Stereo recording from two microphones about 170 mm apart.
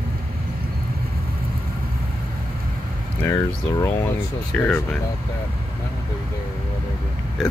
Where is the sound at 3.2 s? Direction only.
15° left (ahead or behind).